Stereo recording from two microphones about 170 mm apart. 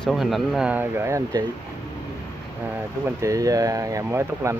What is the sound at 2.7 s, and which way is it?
Speech, 15° right (ahead or behind).